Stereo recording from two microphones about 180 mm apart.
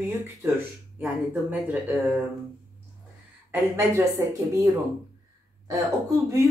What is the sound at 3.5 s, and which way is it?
Speech, 15° right (ahead or behind).